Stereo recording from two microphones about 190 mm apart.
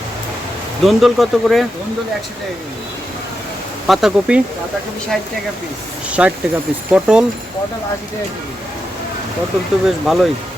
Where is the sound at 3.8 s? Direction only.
Centre (ahead or behind).